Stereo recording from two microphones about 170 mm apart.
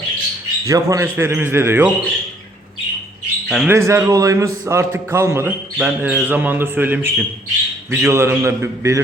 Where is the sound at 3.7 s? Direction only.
15° right (ahead or behind).